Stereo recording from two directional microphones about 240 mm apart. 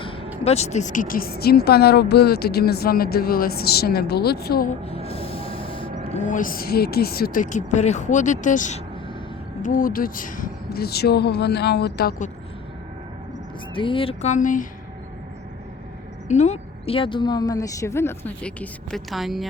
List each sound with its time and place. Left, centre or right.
0.4 s a woman's voice: left
6.1 s a woman's voice: left
13.7 s speech: left
16.3 s a woman's voice: left; by 19.5 s centre